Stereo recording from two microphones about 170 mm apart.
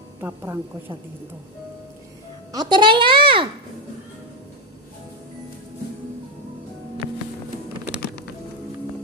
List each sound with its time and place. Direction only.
0.2 s a woman's voice: 15° right (ahead or behind)
2.5 s a child's voice: 25° right (ahead or behind)